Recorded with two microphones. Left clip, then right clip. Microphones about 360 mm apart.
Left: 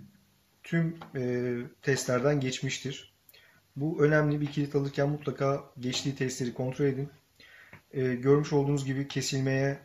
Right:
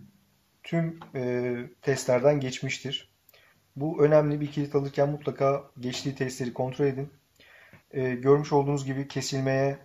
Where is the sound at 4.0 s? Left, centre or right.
Centre.